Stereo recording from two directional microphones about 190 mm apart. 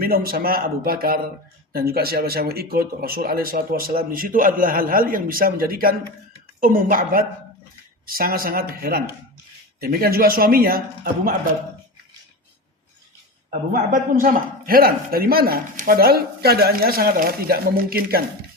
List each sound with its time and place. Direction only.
0.0 s speech: 50° right (ahead or behind)
13.5 s speech: 45° right (ahead or behind)